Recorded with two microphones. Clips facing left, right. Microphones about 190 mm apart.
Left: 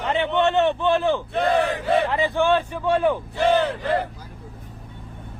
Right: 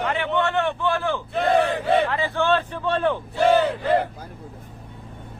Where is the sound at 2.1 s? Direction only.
15° left (ahead or behind).